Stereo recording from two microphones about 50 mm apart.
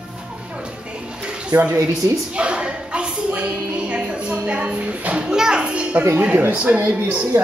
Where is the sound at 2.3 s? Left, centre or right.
Right.